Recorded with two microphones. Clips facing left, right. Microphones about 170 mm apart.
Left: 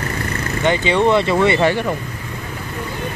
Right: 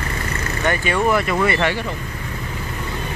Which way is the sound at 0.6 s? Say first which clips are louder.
Left 4 dB; 20° left (ahead or behind).